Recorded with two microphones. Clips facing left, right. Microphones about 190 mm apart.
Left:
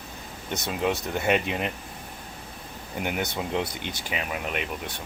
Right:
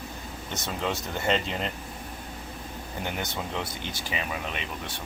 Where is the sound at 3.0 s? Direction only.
15° left (ahead or behind).